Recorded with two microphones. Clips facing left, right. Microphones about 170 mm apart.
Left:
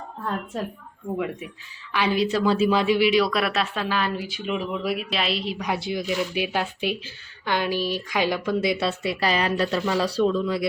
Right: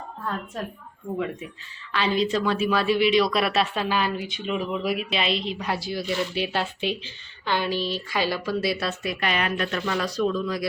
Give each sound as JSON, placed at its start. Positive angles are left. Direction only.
{"t": 1.9, "sound": "speech", "side_deg": 10}
{"t": 2.4, "sound": "a woman's voice", "side_deg": 30}
{"t": 8.9, "sound": "speech", "side_deg": 30}